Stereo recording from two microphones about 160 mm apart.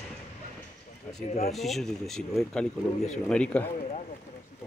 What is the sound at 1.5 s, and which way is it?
Speech, centre (ahead or behind).